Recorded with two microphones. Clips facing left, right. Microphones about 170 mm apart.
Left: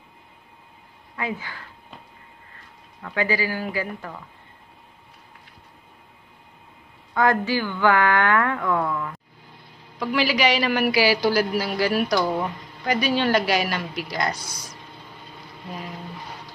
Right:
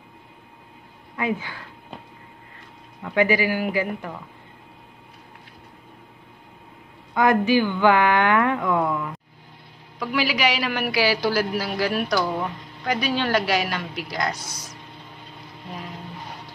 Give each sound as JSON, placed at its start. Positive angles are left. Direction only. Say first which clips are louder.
{"t": 1.1, "sound": "a woman's voice", "louder": "right 4 dB", "side_deg": -20}
{"t": 3.0, "sound": "speech", "louder": "right 4 dB", "side_deg": -20}
{"t": 7.2, "sound": "speech", "louder": "right 3 dB", "side_deg": -15}
{"t": 9.9, "sound": "a woman's voice", "louder": "left 2 dB", "side_deg": 0}